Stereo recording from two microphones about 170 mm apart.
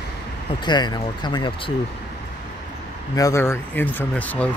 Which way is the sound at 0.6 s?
25° left (ahead or behind).